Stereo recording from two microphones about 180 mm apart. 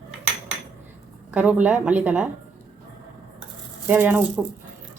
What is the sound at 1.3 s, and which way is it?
Speech, 10° right (ahead or behind).